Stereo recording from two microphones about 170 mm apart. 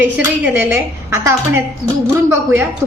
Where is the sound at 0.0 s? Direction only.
10° right (ahead or behind).